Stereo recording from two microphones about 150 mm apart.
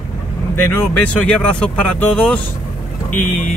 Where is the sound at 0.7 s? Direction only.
10° left (ahead or behind).